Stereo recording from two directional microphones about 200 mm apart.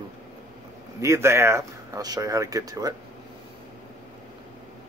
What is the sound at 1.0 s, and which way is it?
Speech, 15° right (ahead or behind).